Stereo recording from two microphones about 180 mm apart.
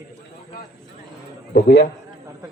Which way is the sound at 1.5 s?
70° left (ahead or behind).